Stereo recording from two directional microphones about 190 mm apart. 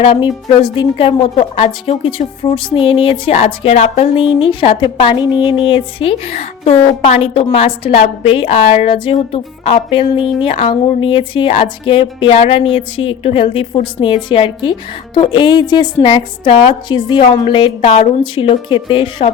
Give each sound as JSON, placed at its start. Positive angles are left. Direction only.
{"t": 0.0, "sound": "a woman's voice", "side_deg": 25}